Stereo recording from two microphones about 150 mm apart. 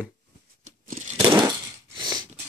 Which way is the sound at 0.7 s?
60° right (ahead or behind).